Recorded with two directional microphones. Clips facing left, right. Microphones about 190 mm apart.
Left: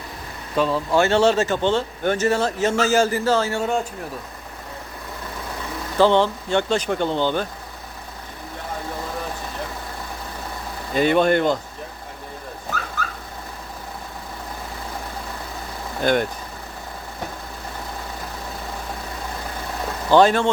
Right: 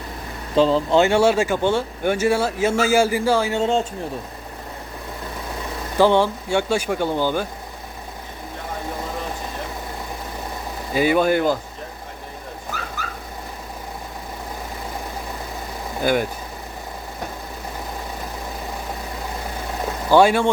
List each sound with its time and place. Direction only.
0.5 s speech: 30° right (ahead or behind)
3.6 s speech: 25° right (ahead or behind)
6.0 s speech: 15° right (ahead or behind)
10.9 s speech: 5° right (ahead or behind)
16.0 s speech: 5° right (ahead or behind)
20.1 s speech: 10° right (ahead or behind)